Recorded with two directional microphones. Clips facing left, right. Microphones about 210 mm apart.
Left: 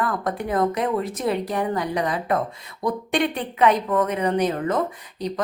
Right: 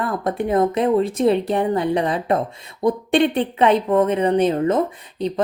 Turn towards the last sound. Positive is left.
turn(degrees=-25)  # may be behind; listen again after turning